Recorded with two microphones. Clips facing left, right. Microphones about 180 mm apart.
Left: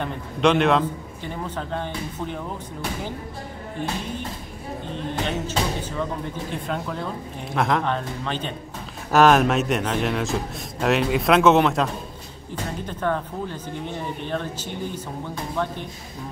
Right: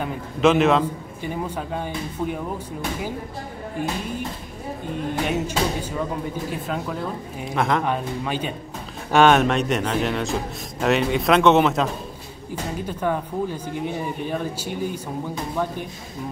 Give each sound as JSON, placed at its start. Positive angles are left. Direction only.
{"t": 0.0, "sound": "a man's voice", "side_deg": -5}
{"t": 4.9, "sound": "a man's voice", "side_deg": -10}
{"t": 9.1, "sound": "a man's voice", "side_deg": 0}